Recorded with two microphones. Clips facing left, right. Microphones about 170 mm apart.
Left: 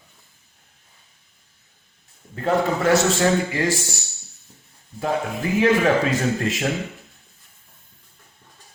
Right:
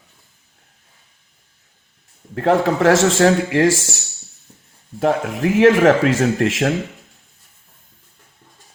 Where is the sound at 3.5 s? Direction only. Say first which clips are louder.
Right 7 dB; 85° right.